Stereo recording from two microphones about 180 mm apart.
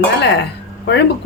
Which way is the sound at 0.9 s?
70° left (ahead or behind).